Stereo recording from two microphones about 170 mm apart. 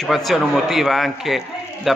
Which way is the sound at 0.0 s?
Centre (ahead or behind).